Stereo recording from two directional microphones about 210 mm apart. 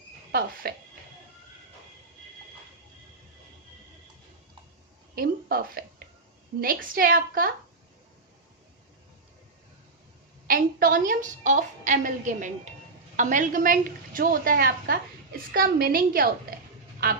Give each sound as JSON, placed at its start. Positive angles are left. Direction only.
{"t": 0.3, "sound": "speech", "side_deg": -45}
{"t": 5.1, "sound": "a woman's voice", "side_deg": -45}
{"t": 10.4, "sound": "a woman's voice", "side_deg": -45}